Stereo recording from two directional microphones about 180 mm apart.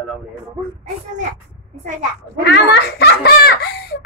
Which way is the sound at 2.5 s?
65° left (ahead or behind).